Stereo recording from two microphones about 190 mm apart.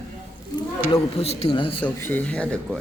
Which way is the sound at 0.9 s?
30° left (ahead or behind).